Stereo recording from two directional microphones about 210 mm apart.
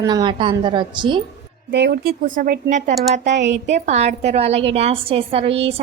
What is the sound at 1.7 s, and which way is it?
A woman's voice, 50° right (ahead or behind).